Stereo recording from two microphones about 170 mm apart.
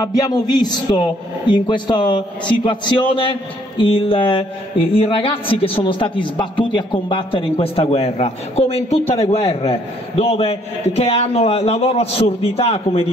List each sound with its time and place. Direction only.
0.0 s music: 20° left (ahead or behind)
1.5 s a man's voice: 25° left (ahead or behind)